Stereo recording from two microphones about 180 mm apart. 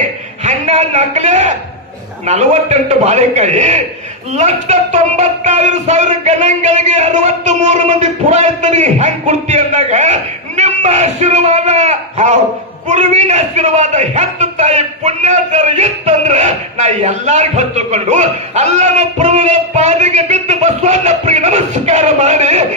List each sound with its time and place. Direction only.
0.4 s a man's voice: 40° right (ahead or behind)